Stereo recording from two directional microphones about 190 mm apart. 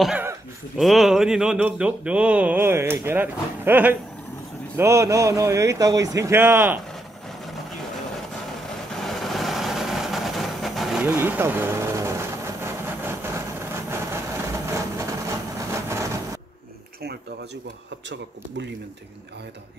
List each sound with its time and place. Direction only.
0.0 s a sound: 10° right (ahead or behind)
0.7 s speech: centre (ahead or behind)
8.3 s vehicle: centre (ahead or behind); by 16.3 s 15° right (ahead or behind)
18.1 s speech: 70° right (ahead or behind)